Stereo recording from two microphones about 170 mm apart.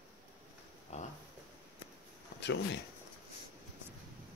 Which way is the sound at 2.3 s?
90° left.